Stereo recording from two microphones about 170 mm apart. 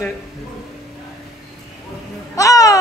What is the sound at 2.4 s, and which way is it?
Speech, 20° left (ahead or behind).